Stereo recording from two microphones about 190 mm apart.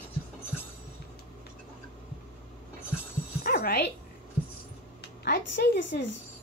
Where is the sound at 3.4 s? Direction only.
55° left (ahead or behind).